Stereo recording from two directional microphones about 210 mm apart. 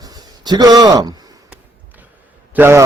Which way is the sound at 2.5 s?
10° right (ahead or behind).